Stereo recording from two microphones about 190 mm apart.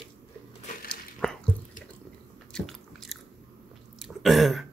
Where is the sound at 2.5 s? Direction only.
Centre (ahead or behind).